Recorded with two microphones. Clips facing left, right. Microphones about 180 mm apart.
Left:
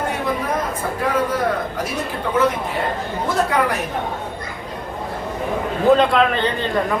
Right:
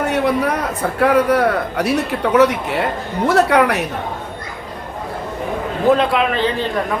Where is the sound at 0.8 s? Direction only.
70° right (ahead or behind).